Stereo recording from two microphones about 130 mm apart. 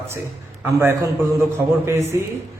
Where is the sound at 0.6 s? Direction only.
20° right (ahead or behind).